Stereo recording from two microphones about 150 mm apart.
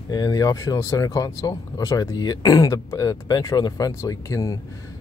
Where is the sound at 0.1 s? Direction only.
25° left (ahead or behind).